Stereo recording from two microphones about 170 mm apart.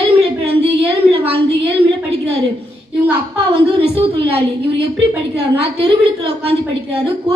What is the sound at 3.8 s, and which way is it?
A woman's voice, 35° right (ahead or behind).